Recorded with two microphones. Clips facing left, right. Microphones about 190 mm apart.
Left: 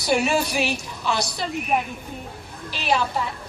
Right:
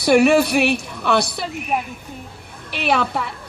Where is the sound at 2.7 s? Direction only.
60° right (ahead or behind).